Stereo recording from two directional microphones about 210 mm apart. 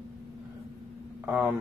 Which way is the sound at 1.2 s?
5° right (ahead or behind).